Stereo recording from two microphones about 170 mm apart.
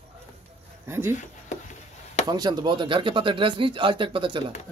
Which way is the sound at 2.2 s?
25° right (ahead or behind).